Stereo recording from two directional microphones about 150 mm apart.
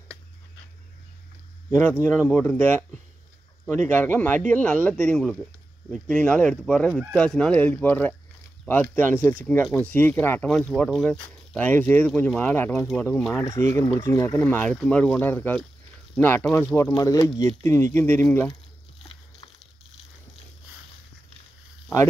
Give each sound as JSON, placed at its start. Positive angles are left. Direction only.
{"t": 1.8, "sound": "speech", "side_deg": 15}